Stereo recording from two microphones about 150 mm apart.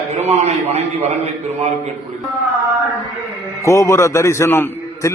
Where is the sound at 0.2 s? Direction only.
45° right (ahead or behind).